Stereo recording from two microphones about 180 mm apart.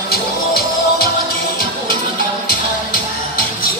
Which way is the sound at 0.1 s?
55° left (ahead or behind).